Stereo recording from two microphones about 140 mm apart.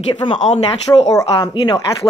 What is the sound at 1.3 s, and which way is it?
Speech, 30° left (ahead or behind).